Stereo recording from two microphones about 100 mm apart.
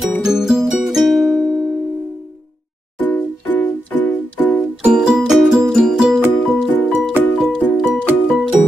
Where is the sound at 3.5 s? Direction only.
20° left (ahead or behind).